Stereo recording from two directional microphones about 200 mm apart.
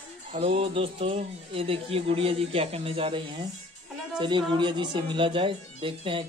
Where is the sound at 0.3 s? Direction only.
30° right (ahead or behind).